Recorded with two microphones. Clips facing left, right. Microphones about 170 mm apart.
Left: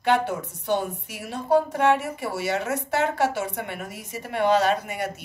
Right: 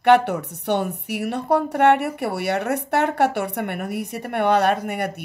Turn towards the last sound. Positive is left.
turn(degrees=-60)  # may be behind; listen again after turning